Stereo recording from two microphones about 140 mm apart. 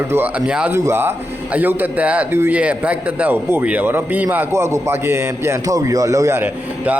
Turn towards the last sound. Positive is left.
turn(degrees=-15)  # may be behind; listen again after turning